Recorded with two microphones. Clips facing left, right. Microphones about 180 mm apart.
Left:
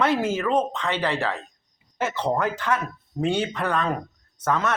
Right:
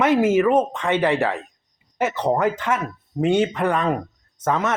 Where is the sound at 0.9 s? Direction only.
50° right (ahead or behind).